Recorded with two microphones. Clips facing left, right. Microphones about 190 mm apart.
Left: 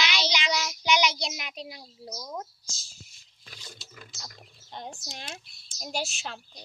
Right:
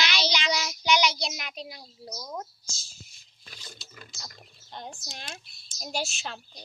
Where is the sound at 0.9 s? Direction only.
20° left (ahead or behind).